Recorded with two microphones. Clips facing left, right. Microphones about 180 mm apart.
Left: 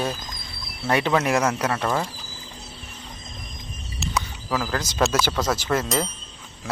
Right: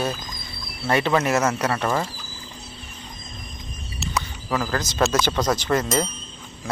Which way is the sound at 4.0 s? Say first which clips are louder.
Even; centre (ahead or behind).